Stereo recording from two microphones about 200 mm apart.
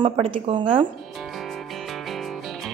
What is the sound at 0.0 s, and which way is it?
Speech, 25° right (ahead or behind).